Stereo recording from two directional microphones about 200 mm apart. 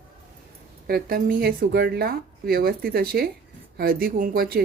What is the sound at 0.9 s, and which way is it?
Speech, 50° right (ahead or behind).